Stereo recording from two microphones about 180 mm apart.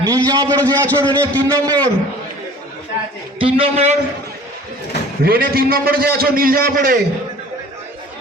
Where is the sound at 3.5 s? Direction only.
35° right (ahead or behind).